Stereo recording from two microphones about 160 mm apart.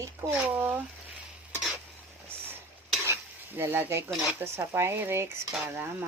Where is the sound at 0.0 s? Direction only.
15° right (ahead or behind).